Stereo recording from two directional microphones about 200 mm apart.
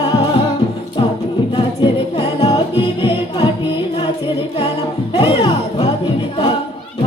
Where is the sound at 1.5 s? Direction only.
25° left (ahead or behind).